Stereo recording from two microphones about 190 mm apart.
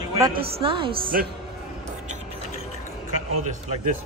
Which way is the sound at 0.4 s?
30° right (ahead or behind).